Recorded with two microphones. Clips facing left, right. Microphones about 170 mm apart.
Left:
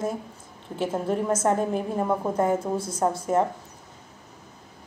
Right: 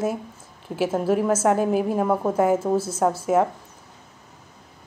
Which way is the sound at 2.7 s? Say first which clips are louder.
Right 6 dB; 25° right (ahead or behind).